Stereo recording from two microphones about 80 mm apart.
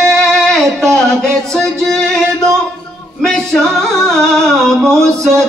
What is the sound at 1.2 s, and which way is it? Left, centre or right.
Music, centre.